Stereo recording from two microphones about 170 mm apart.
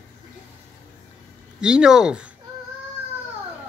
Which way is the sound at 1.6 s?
5° right (ahead or behind).